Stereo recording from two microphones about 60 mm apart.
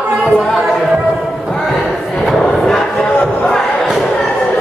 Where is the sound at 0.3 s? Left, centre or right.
Centre.